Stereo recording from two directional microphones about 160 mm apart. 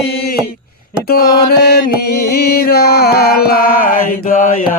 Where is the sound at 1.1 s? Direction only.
80° left.